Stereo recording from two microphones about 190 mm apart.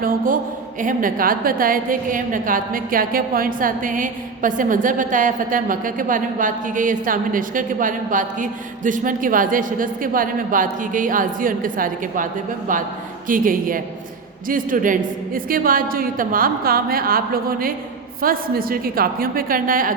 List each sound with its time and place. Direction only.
0.8 s a woman's voice: 45° right (ahead or behind)